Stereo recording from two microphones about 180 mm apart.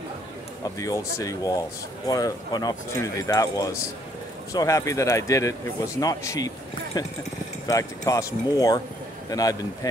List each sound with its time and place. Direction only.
0.7 s speech: 20° left (ahead or behind)